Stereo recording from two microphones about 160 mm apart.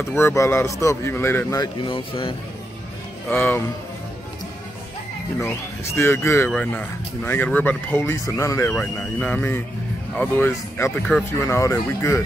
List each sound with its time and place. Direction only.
0.0 s speech: 15° left (ahead or behind)
1.6 s speech: 30° left (ahead or behind)
3.3 s speech: 15° left (ahead or behind)
5.9 s speech: 15° left (ahead or behind)